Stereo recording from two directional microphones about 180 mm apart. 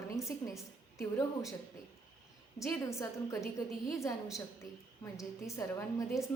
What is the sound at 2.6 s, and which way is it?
A woman's voice, 15° left (ahead or behind).